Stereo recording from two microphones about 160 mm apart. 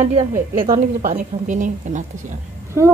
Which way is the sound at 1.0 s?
50° right (ahead or behind).